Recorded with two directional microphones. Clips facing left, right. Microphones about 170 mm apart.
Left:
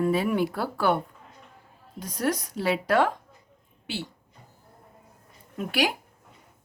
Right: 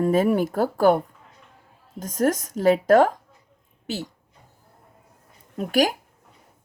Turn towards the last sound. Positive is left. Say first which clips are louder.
# right 5 dB
turn(degrees=-45)  # may be behind; listen again after turning